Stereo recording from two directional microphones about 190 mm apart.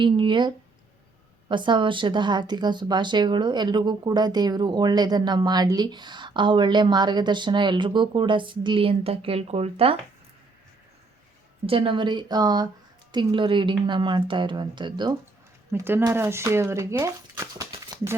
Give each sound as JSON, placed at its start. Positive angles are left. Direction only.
{"t": 0.0, "sound": "a woman's voice", "side_deg": -25}
{"t": 11.6, "sound": "a woman's voice", "side_deg": -30}
{"t": 15.7, "sound": "speech", "side_deg": -10}